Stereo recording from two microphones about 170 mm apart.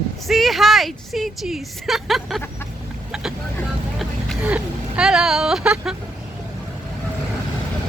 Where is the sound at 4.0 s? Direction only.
5° right (ahead or behind).